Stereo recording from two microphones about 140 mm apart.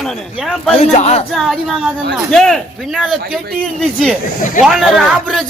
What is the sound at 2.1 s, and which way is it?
Speech, 5° left (ahead or behind).